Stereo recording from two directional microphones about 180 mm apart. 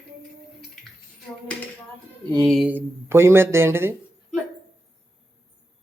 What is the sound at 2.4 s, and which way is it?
Speech, centre (ahead or behind).